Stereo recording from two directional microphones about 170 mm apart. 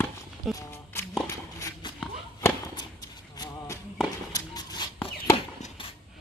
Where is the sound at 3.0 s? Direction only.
20° left (ahead or behind).